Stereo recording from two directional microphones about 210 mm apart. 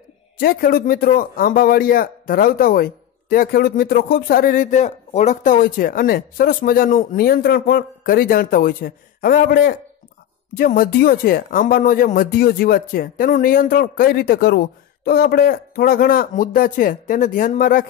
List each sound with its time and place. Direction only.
0.4 s a man's voice: 45° left (ahead or behind)